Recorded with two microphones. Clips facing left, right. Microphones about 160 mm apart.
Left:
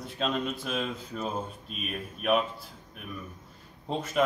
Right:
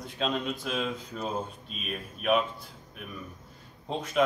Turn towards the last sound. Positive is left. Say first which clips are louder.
# even
turn(degrees=5)  # may be behind; listen again after turning